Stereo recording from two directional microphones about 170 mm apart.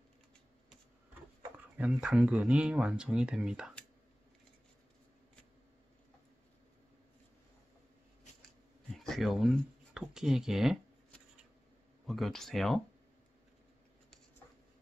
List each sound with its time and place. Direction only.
1.8 s speech: 5° right (ahead or behind)
8.9 s a sound: centre (ahead or behind)
12.1 s speech: centre (ahead or behind)